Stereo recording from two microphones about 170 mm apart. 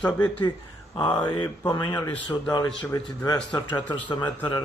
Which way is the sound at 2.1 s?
10° left (ahead or behind).